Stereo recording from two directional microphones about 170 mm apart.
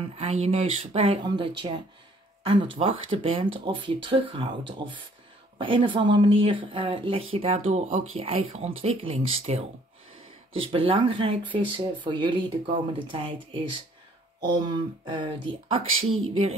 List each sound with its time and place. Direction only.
0.0 s speech: 35° right (ahead or behind)
2.8 s speech: 35° right (ahead or behind)